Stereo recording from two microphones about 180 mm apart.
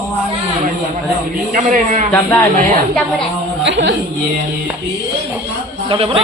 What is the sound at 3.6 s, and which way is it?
Speech, 80° right.